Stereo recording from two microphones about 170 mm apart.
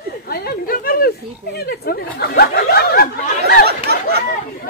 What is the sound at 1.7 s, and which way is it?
Chatter, 65° left (ahead or behind).